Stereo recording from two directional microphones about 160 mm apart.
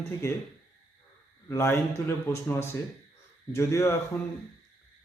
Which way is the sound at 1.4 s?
15° left (ahead or behind).